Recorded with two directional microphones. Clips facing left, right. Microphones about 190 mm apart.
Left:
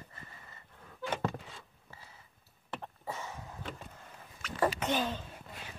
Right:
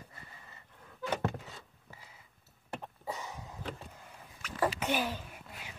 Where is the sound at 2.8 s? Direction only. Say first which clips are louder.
Even; 15° right (ahead or behind).